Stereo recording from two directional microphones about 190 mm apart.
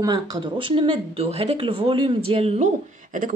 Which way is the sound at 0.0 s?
20° right (ahead or behind).